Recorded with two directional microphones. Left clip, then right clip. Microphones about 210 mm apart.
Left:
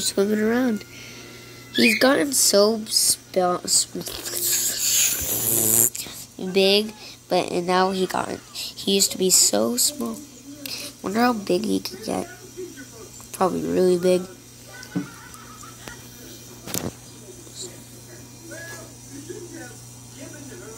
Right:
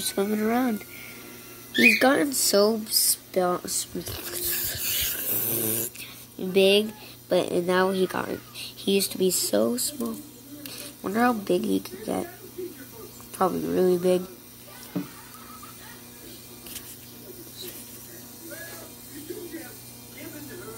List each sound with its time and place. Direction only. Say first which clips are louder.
0.0 s speech: left 5 dB; 5° left (ahead or behind)
13.4 s speech: left 3 dB; 5° left (ahead or behind)